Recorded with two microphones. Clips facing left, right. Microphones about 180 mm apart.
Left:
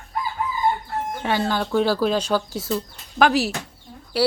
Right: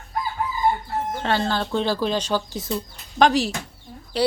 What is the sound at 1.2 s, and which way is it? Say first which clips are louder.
Speech: left 1 dB; 10° left (ahead or behind).